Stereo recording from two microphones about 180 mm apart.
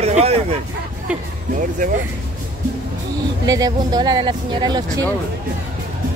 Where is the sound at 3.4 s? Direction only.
20° right (ahead or behind).